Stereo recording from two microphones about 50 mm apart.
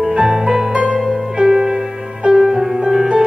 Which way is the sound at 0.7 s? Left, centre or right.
Centre.